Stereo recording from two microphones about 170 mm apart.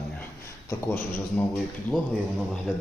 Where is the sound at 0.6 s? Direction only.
15° left (ahead or behind).